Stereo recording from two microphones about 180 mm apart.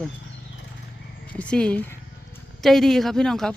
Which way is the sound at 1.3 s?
5° left (ahead or behind).